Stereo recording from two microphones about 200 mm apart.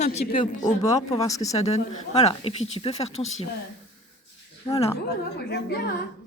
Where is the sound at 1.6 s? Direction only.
35° left (ahead or behind).